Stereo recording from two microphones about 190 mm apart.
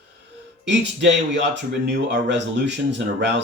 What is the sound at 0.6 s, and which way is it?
Speech, 70° right (ahead or behind).